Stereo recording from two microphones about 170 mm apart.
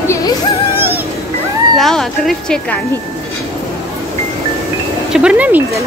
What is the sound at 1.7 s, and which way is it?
Speech, centre (ahead or behind).